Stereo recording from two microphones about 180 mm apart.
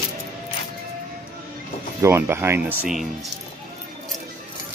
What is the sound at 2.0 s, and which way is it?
Speech, 15° right (ahead or behind).